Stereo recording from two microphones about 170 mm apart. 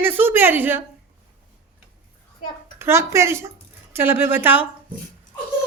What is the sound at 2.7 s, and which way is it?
A woman's voice, 15° right (ahead or behind).